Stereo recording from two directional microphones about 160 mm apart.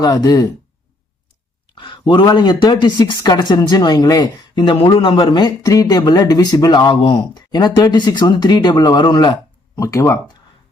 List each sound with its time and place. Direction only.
0.0 s speech: 25° left (ahead or behind)
1.7 s speech: 30° left (ahead or behind)